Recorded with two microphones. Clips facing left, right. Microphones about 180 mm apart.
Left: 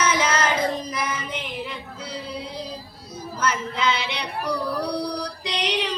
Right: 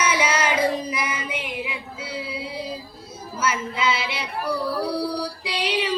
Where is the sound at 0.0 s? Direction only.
10° right (ahead or behind).